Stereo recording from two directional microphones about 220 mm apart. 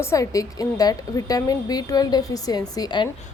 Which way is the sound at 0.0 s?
15° left (ahead or behind).